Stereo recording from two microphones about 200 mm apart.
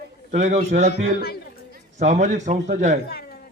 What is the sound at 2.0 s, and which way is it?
Speech, 35° right (ahead or behind).